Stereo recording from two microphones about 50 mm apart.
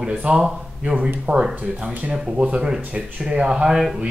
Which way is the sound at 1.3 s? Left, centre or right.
Right.